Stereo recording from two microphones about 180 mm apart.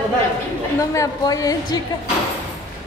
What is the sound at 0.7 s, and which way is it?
A woman's voice, 15° left (ahead or behind).